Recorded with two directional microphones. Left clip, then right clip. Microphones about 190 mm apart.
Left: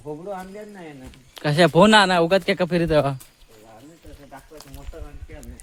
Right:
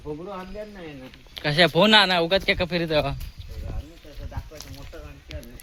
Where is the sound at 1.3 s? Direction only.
40° left (ahead or behind).